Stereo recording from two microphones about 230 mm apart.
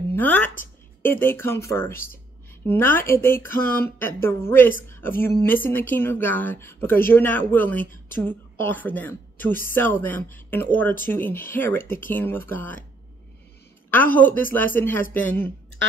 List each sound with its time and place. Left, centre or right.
0.1 s a woman's voice: centre
1.9 s a sound: left
2.6 s a woman's voice: centre
3.5 s a sound: left
4.0 s a woman's voice: centre
14.1 s a woman's voice: centre